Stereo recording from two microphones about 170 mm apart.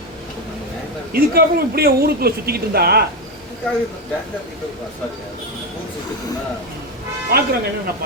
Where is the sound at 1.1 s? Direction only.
60° right (ahead or behind).